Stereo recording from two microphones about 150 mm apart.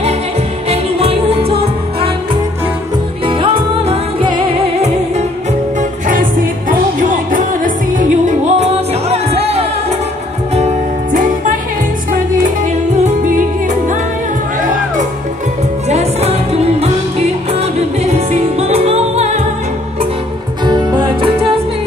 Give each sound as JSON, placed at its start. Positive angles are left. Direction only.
{"t": 0.7, "sound": "music", "side_deg": -40}
{"t": 3.3, "sound": "music", "side_deg": -35}
{"t": 5.8, "sound": "music", "side_deg": -60}
{"t": 9.1, "sound": "music", "side_deg": -45}
{"t": 13.0, "sound": "music", "side_deg": -65}
{"t": 15.9, "sound": "music", "side_deg": -45}
{"t": 20.6, "sound": "music", "side_deg": -30}